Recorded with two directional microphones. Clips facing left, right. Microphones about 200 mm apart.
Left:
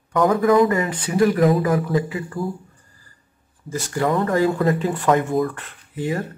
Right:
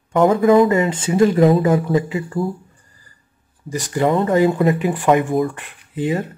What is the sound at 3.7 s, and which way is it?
Speech, 15° right (ahead or behind).